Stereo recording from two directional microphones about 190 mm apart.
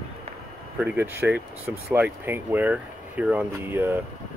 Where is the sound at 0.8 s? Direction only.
10° right (ahead or behind).